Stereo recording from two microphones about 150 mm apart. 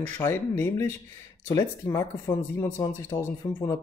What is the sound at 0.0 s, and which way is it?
Speech, 15° left (ahead or behind).